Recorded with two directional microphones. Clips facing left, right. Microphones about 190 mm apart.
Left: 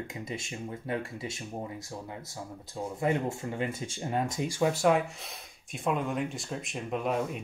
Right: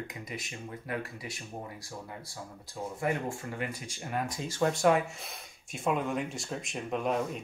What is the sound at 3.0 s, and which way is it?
Speech, 20° left (ahead or behind).